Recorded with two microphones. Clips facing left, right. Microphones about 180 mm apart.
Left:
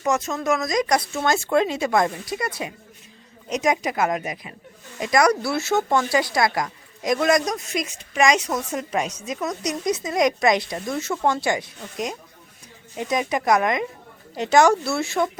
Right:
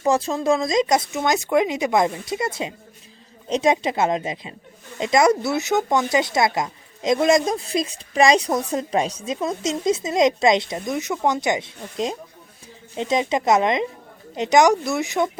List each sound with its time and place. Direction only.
0.0 s speech: 30° right (ahead or behind)
3.5 s speech: 30° right (ahead or behind)